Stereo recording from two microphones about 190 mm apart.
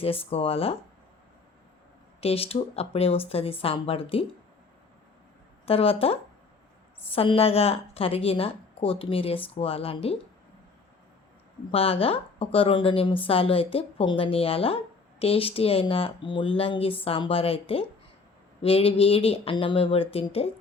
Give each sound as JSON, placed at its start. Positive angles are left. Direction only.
{"t": 0.0, "sound": "speech", "side_deg": 30}
{"t": 2.2, "sound": "speech", "side_deg": 30}
{"t": 5.6, "sound": "a woman's voice", "side_deg": 30}
{"t": 11.7, "sound": "a woman's voice", "side_deg": 30}